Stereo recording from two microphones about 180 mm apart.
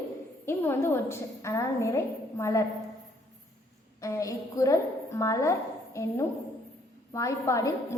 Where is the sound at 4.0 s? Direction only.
20° left (ahead or behind).